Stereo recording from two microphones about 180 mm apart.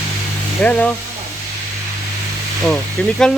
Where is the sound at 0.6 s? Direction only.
5° left (ahead or behind).